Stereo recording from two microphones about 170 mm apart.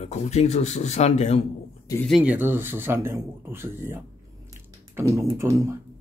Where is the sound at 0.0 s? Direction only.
40° left (ahead or behind).